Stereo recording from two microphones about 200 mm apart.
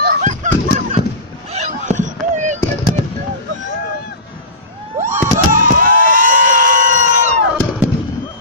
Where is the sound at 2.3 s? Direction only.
35° right (ahead or behind).